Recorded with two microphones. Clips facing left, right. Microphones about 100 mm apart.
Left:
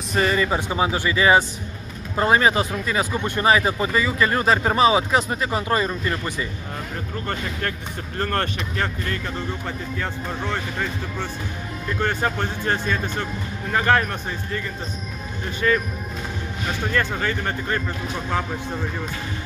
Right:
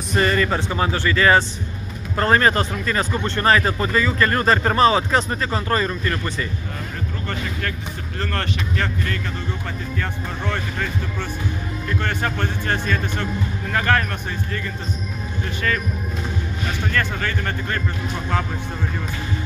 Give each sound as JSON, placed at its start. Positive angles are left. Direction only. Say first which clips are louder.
{"t": 0.1, "sound": "speech", "louder": "right 1 dB", "side_deg": 10}
{"t": 8.2, "sound": "speech", "louder": "left 2 dB", "side_deg": 35}
{"t": 9.9, "sound": "speech", "louder": "even", "side_deg": 15}
{"t": 12.0, "sound": "speech", "louder": "left 3 dB", "side_deg": 20}
{"t": 17.2, "sound": "speech", "louder": "even", "side_deg": 20}